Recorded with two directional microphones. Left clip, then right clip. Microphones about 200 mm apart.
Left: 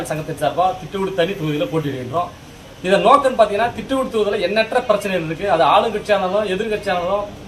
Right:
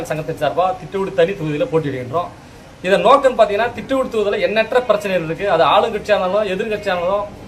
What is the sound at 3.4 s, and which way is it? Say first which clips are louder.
A man's voice: right 1 dB; 25° right (ahead or behind).